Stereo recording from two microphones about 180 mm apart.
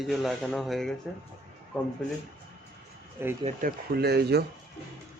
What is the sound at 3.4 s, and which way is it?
Speech, 45° right (ahead or behind).